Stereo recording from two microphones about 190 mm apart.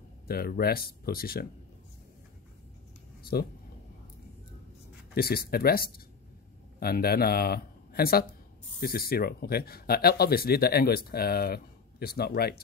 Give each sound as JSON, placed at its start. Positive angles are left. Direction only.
{"t": 0.3, "sound": "speech", "side_deg": 55}
{"t": 3.2, "sound": "a sound", "side_deg": 55}
{"t": 5.1, "sound": "a man's voice", "side_deg": 55}